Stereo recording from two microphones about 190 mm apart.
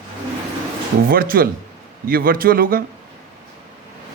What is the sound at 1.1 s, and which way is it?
Speech, 50° right (ahead or behind).